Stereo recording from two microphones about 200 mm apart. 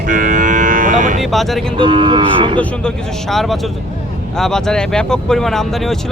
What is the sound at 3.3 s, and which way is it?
Speech, centre (ahead or behind).